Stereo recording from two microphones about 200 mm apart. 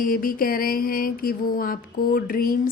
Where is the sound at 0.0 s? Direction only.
45° left (ahead or behind).